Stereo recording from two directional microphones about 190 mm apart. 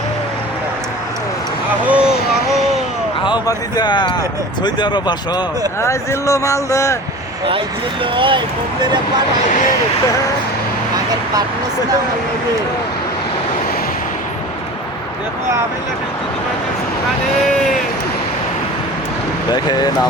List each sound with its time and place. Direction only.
1.8 s vehicle: 5° right (ahead or behind)
3.2 s speech: 20° left (ahead or behind)
8.1 s speech: 25° right (ahead or behind)
9.5 s speech: 40° left (ahead or behind)
19.5 s speech: 20° left (ahead or behind)